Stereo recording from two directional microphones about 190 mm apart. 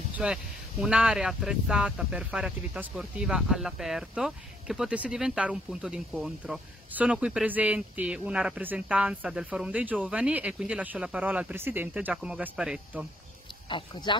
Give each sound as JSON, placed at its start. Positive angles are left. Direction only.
{"t": 0.1, "sound": "speech", "side_deg": -5}
{"t": 13.7, "sound": "speech", "side_deg": 25}